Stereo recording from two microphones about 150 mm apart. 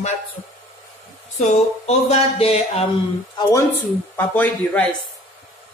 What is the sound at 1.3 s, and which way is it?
Speech, 50° left (ahead or behind).